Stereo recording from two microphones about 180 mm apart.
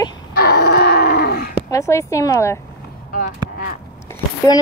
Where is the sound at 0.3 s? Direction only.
60° left (ahead or behind).